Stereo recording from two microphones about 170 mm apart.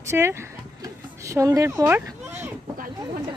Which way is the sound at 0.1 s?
15° right (ahead or behind).